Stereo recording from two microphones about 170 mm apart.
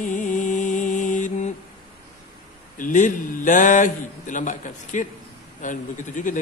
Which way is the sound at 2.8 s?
50° left (ahead or behind).